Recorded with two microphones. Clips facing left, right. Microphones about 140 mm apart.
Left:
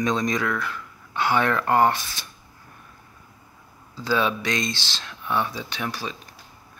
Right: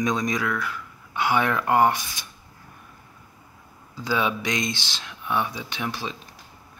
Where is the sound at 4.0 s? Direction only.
15° right (ahead or behind).